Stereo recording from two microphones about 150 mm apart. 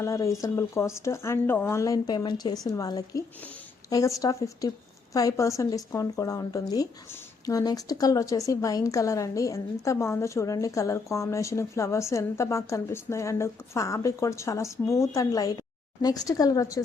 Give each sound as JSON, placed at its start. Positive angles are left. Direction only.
{"t": 0.0, "sound": "a woman's voice", "side_deg": 20}